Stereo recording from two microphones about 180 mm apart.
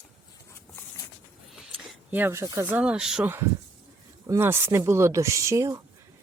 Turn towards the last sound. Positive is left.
turn(degrees=-15)  # may be behind; listen again after turning